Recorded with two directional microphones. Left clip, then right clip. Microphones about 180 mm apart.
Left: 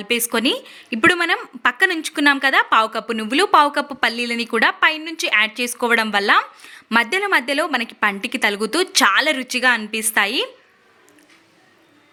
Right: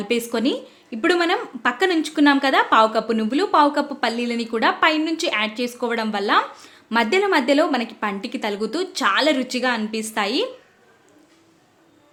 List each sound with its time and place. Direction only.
0.0 s a woman's voice: 15° left (ahead or behind)